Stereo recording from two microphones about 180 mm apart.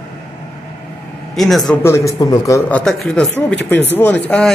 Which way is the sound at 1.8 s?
15° left (ahead or behind).